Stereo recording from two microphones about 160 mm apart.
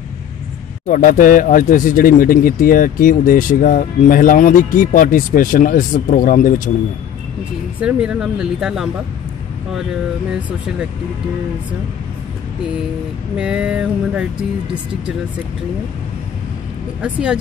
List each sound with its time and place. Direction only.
0.8 s speech: 55° left (ahead or behind)
7.8 s speech: 5° right (ahead or behind)
13.4 s a sound: 5° right (ahead or behind)
14.7 s speech: 5° right (ahead or behind)
17.0 s speech: 5° right (ahead or behind)